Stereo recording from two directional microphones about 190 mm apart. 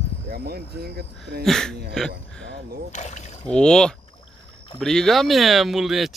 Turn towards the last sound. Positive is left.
turn(degrees=0)  # may be behind; listen again after turning